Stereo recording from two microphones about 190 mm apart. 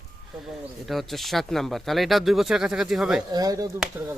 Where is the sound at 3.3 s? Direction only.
20° right (ahead or behind).